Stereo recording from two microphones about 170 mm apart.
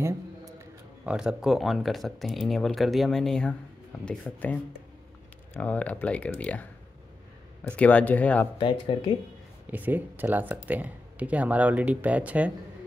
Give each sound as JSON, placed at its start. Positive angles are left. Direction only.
{"t": 1.0, "sound": "speech", "side_deg": -5}
{"t": 5.6, "sound": "speech", "side_deg": 10}
{"t": 8.5, "sound": "speech", "side_deg": 30}
{"t": 9.7, "sound": "speech", "side_deg": -10}